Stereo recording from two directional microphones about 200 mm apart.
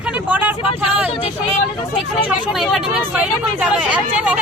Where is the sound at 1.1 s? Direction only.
30° left (ahead or behind).